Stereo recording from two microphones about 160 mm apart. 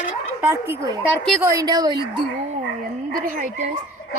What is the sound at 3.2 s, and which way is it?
Speech, 55° right (ahead or behind).